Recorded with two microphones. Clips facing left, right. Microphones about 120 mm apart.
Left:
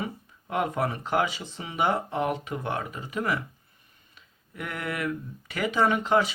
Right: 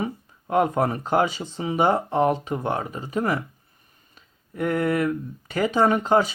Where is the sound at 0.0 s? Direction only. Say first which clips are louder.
Right 5 dB; 35° right (ahead or behind).